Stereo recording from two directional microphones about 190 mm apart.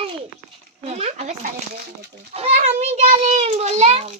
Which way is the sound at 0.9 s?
35° right (ahead or behind).